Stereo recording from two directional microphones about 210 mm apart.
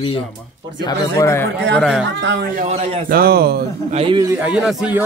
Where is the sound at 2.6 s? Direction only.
30° right (ahead or behind); by 4.0 s 45° right (ahead or behind).